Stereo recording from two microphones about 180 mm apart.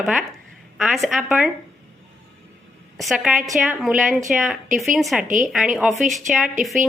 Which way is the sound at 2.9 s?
Centre (ahead or behind).